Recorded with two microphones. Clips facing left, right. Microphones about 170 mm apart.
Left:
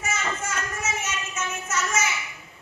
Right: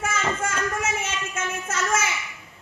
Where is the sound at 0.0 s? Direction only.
55° right (ahead or behind).